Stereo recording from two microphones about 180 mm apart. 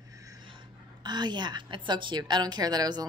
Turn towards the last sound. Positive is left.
turn(degrees=-25)  # may be behind; listen again after turning